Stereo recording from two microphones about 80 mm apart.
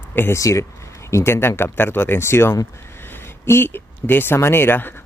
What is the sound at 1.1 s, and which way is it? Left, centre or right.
Speech, left.